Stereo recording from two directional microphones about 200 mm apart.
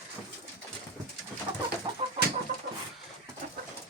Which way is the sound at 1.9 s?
25° right (ahead or behind).